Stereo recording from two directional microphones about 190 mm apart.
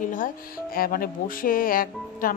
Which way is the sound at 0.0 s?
45° left (ahead or behind).